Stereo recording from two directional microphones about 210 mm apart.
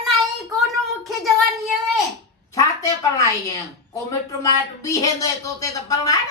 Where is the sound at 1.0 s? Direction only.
Centre (ahead or behind).